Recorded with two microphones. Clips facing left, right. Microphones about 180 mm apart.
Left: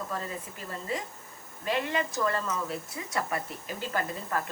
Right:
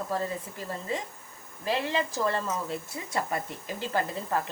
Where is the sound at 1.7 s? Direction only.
30° right (ahead or behind).